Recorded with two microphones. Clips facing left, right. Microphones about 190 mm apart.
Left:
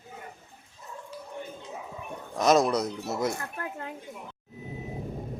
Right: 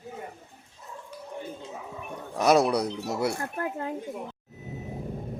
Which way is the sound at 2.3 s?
10° right (ahead or behind).